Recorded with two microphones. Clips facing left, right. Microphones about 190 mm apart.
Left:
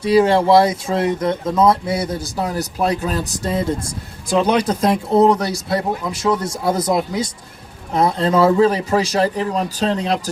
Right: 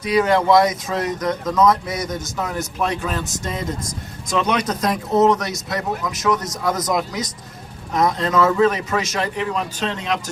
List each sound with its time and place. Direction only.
0.0 s speech: 30° left (ahead or behind)